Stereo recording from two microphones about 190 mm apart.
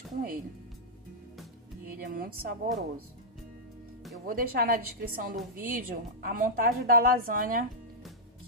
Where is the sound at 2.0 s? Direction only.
50° right (ahead or behind).